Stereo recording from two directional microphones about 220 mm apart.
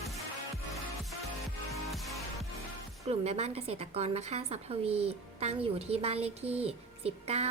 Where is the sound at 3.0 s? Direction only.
30° right (ahead or behind).